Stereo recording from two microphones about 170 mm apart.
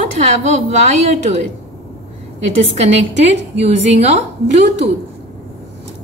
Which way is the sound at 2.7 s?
40° right (ahead or behind).